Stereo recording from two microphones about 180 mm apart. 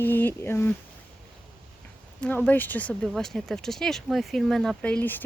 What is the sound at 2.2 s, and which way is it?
Speech, 10° left (ahead or behind).